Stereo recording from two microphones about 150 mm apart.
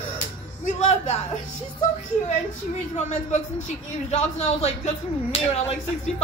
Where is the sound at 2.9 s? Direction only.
50° left (ahead or behind).